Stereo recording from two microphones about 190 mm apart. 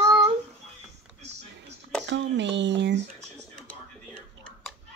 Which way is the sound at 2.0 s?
70° right (ahead or behind).